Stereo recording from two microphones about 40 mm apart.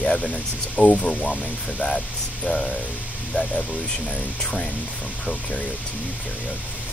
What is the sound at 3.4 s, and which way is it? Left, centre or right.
Speech, left.